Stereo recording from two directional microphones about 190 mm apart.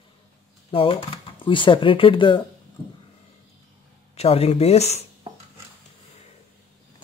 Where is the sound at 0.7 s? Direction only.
30° left (ahead or behind).